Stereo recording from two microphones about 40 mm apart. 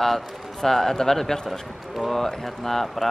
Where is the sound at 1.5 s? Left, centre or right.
Centre.